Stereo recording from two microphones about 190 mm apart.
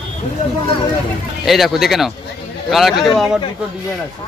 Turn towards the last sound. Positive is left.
turn(degrees=0)  # may be behind; listen again after turning